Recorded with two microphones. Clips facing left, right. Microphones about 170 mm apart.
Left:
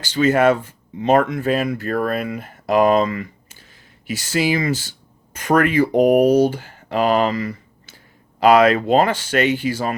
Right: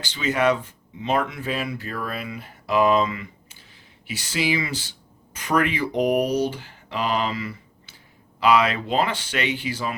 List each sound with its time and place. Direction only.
0.0 s speech: 45° left (ahead or behind)